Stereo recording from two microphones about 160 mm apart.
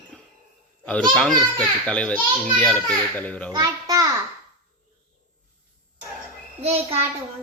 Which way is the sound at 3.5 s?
25° right (ahead or behind).